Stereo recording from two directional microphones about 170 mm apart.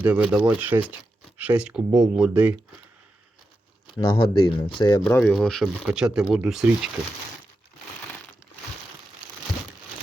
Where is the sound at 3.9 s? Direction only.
30° left (ahead or behind).